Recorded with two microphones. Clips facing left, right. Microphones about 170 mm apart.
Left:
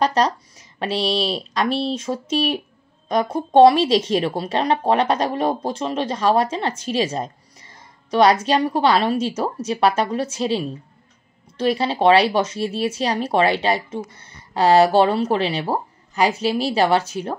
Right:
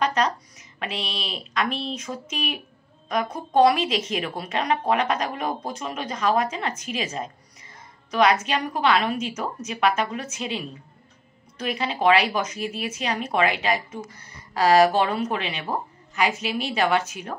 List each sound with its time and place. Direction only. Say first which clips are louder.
0.0 s speech: left 4 dB; 35° left (ahead or behind)